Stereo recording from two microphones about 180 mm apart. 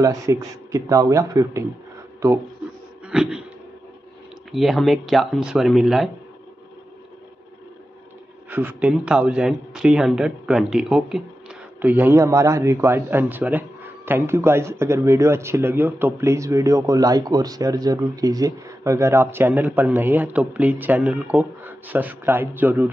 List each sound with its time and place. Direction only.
0.0 s speech: 15° right (ahead or behind)
3.1 s a sound: 5° right (ahead or behind)
4.5 s speech: centre (ahead or behind)
8.5 s speech: 10° right (ahead or behind)